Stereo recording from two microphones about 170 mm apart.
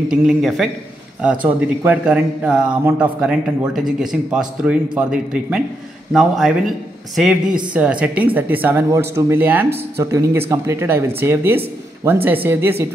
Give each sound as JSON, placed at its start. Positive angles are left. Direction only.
{"t": 0.1, "sound": "a man's voice", "side_deg": 0}
{"t": 1.9, "sound": "a man's voice", "side_deg": -5}